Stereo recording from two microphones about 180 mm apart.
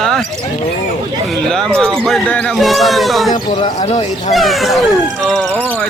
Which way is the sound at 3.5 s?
35° left (ahead or behind).